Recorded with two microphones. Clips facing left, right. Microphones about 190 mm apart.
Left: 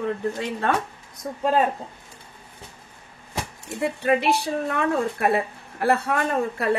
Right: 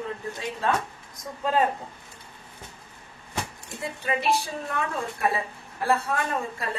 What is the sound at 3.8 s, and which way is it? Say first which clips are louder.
A woman's voice: left 7 dB; 65° left (ahead or behind).